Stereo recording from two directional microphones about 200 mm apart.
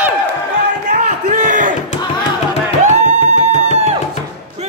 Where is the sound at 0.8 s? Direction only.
40° right (ahead or behind).